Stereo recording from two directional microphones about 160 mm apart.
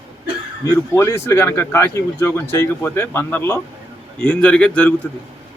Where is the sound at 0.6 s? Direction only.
20° left (ahead or behind).